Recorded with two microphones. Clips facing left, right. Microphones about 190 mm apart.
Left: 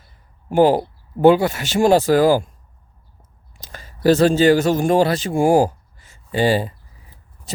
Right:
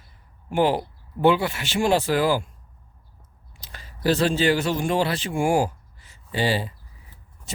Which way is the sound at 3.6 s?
45° left (ahead or behind).